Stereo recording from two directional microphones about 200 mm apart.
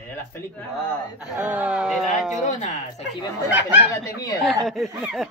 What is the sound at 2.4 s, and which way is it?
Speech, 35° left (ahead or behind).